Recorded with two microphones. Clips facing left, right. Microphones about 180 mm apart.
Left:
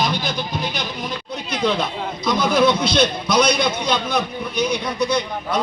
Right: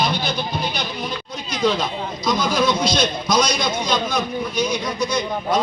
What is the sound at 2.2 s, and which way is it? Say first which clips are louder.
A man's voice: left 3 dB; 60° left (ahead or behind).